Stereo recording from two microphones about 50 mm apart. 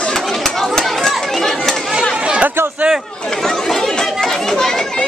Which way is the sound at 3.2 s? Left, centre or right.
Centre.